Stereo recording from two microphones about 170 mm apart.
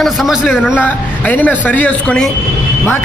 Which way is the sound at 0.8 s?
10° left (ahead or behind).